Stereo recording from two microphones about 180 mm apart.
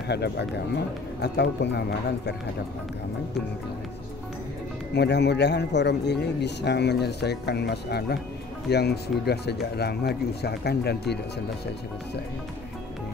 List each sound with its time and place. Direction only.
0.1 s a man's voice: 65° left (ahead or behind)
4.9 s a man's voice: 70° left (ahead or behind)